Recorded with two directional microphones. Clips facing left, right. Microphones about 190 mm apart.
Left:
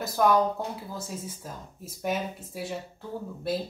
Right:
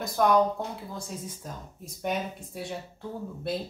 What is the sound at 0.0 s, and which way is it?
Speech, centre (ahead or behind).